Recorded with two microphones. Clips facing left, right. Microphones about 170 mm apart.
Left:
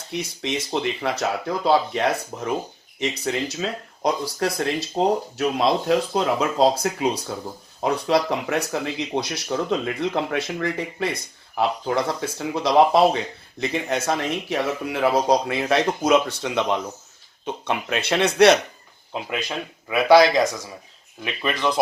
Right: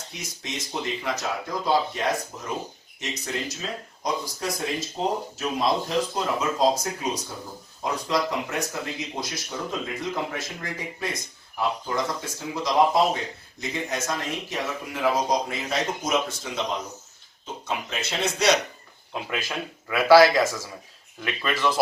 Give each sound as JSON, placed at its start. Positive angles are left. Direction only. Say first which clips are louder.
{"t": 0.1, "sound": "speech", "louder": "left 11 dB", "side_deg": 60}
{"t": 16.4, "sound": "speech", "louder": "left 6 dB", "side_deg": 80}
{"t": 17.4, "sound": "speech", "louder": "left 5 dB", "side_deg": 65}
{"t": 19.5, "sound": "speech", "louder": "left 2 dB", "side_deg": 20}